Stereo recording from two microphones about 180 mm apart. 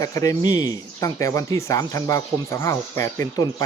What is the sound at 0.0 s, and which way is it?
Speech, 20° left (ahead or behind).